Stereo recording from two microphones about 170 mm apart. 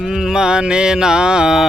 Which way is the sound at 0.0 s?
Centre (ahead or behind).